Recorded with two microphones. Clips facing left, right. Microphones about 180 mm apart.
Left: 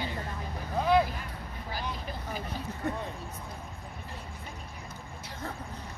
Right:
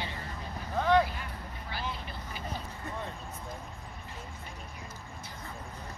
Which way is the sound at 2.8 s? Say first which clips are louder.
Left 9 dB; 65° left (ahead or behind).